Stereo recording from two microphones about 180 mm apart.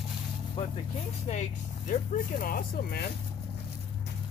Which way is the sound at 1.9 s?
50° left (ahead or behind).